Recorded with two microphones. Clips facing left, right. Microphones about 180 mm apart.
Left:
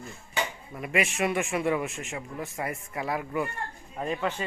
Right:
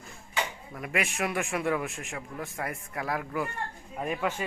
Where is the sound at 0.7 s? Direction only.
Centre (ahead or behind).